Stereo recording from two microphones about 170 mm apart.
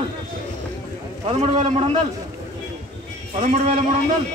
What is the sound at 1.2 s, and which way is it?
Speech, 35° right (ahead or behind).